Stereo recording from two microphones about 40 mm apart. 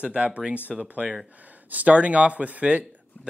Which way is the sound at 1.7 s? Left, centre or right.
Right.